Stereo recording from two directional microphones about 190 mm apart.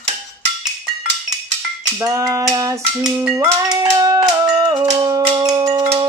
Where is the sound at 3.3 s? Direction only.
20° right (ahead or behind).